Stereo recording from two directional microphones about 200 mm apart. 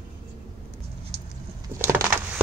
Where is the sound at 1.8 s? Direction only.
10° right (ahead or behind).